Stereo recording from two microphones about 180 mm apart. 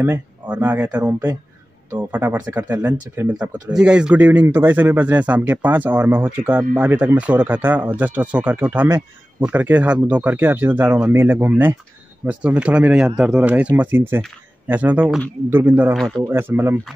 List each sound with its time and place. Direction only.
0.0 s speech: 10° right (ahead or behind)